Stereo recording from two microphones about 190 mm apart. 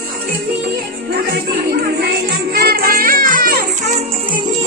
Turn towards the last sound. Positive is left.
turn(degrees=-45)  # may be behind; listen again after turning